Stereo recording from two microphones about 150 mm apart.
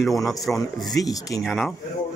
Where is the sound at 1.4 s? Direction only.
Centre (ahead or behind).